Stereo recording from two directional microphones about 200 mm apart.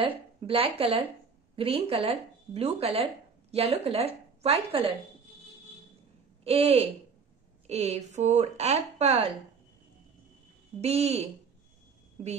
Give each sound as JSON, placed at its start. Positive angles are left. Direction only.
{"t": 0.0, "sound": "speech", "side_deg": -25}
{"t": 6.4, "sound": "speech", "side_deg": -30}
{"t": 10.8, "sound": "speech", "side_deg": -30}